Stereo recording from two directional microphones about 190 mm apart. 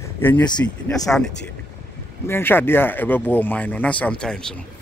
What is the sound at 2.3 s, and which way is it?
Speech, 10° left (ahead or behind).